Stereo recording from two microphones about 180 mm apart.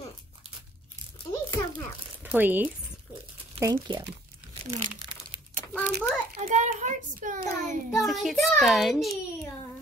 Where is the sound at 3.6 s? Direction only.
20° right (ahead or behind).